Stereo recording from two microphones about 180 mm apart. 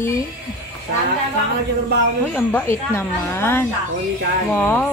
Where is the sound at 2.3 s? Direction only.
10° left (ahead or behind).